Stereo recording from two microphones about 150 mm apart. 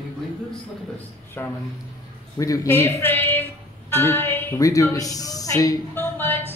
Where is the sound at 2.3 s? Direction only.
20° left (ahead or behind).